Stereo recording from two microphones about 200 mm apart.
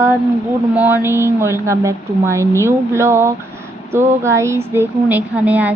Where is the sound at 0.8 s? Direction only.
10° right (ahead or behind).